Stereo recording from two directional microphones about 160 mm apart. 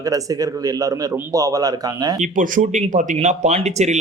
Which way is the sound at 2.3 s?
55° right (ahead or behind).